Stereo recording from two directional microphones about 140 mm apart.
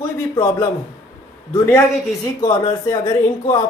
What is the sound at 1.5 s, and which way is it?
A man's voice, 20° left (ahead or behind).